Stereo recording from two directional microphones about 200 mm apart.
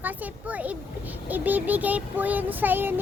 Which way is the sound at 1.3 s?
10° right (ahead or behind).